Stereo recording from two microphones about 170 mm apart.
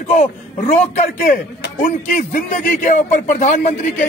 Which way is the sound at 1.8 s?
45° left (ahead or behind).